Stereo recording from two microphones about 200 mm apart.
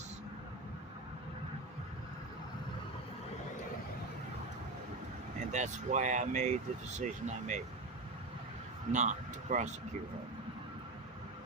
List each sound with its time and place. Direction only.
5.5 s speech: 35° right (ahead or behind)
8.9 s speech: 35° right (ahead or behind)